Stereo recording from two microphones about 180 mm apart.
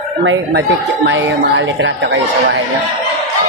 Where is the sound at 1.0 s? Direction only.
90° right.